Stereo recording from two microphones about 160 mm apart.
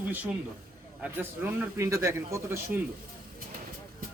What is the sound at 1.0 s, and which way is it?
A man's voice, 15° right (ahead or behind).